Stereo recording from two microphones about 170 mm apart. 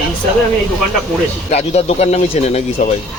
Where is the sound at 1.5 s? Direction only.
40° left (ahead or behind).